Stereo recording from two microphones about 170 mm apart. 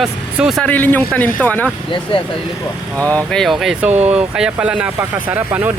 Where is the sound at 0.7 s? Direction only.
10° left (ahead or behind).